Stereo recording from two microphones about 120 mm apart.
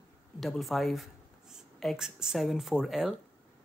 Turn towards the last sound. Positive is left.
turn(degrees=-5)  # may be behind; listen again after turning